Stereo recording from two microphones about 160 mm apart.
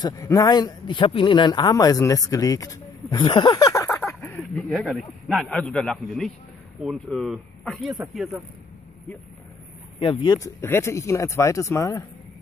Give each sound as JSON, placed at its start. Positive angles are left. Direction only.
{"t": 0.0, "sound": "speech", "side_deg": 20}
{"t": 9.9, "sound": "speech", "side_deg": 30}